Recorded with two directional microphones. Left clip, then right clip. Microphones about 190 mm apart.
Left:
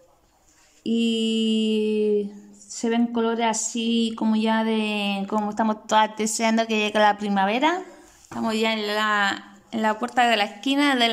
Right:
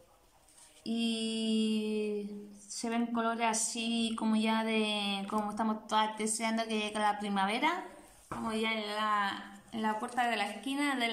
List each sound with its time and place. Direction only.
0.8 s mantra: 40° left (ahead or behind)
2.7 s speech: 35° left (ahead or behind)
8.4 s a woman's voice: 60° left (ahead or behind)